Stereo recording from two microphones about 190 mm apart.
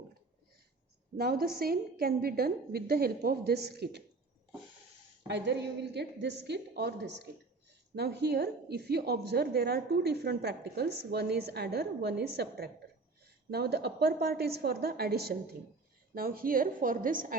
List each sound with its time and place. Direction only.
1.1 s a woman's voice: 55° right (ahead or behind)
5.3 s a woman's voice: 60° right (ahead or behind); by 17.3 s 45° right (ahead or behind)